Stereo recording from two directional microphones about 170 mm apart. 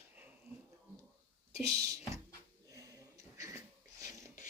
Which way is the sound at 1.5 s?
20° right (ahead or behind).